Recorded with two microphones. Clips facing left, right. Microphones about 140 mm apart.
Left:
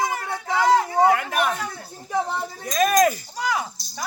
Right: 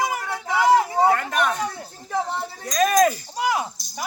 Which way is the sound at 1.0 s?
5° left (ahead or behind).